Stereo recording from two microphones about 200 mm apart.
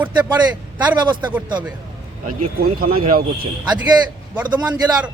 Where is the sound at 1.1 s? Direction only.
20° right (ahead or behind).